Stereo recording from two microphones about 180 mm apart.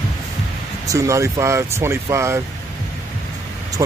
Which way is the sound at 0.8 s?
15° right (ahead or behind).